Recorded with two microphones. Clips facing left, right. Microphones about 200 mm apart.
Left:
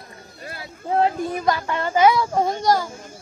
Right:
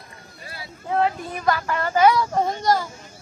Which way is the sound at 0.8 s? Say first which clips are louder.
Left 2 dB; 35° left (ahead or behind).